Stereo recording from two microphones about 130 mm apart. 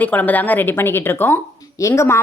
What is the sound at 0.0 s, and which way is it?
A woman's voice, 15° left (ahead or behind).